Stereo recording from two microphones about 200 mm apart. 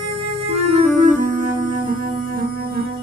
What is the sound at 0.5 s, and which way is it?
Music, 30° right (ahead or behind).